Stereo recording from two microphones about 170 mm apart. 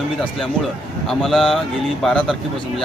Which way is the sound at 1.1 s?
Centre (ahead or behind).